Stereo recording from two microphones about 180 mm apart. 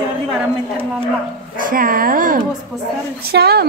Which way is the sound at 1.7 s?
50° right (ahead or behind).